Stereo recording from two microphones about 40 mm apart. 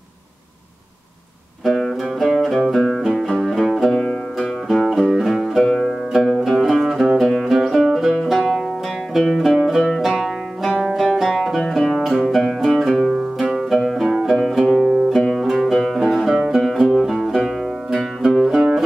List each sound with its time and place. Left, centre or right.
1.6 s music: centre
3.1 s music: centre
4.8 s music: centre
5.6 s music: centre
6.9 s music: centre
7.2 s music: centre
10.7 s music: centre
11.0 s music: centre
13.7 s music: centre
18.5 s music: centre